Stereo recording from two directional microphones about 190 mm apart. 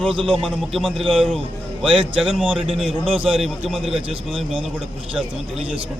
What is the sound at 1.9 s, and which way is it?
Speech, 25° right (ahead or behind).